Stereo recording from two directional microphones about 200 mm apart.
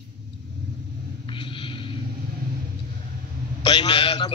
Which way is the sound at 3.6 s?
25° left (ahead or behind).